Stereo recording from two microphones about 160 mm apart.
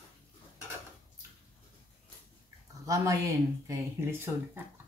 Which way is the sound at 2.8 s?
20° right (ahead or behind).